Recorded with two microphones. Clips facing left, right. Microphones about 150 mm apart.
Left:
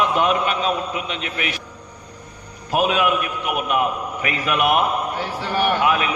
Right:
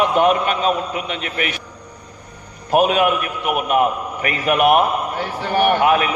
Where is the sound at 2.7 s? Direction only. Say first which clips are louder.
Right 4 dB; 45° right (ahead or behind).